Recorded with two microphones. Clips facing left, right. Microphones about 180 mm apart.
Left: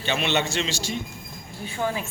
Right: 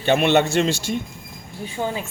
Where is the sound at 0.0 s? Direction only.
55° right (ahead or behind).